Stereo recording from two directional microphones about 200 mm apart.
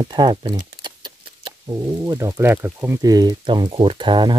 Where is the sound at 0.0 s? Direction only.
20° right (ahead or behind).